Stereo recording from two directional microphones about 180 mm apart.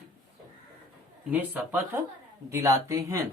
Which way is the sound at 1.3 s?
10° right (ahead or behind).